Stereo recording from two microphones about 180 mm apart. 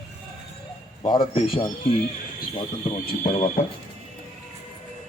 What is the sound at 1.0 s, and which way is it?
Speech, 25° left (ahead or behind).